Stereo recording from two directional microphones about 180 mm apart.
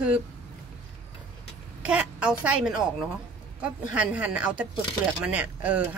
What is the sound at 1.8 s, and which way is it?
Speech, 5° right (ahead or behind).